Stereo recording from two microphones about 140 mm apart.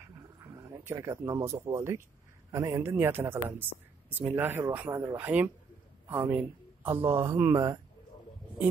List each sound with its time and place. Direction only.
0.7 s speech: 20° right (ahead or behind)